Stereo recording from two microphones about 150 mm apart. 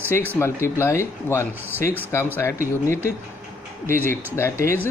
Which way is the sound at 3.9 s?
15° left (ahead or behind).